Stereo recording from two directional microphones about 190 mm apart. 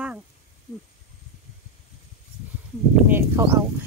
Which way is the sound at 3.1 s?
10° right (ahead or behind).